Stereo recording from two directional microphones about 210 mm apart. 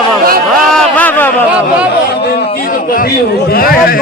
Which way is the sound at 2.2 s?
50° left (ahead or behind).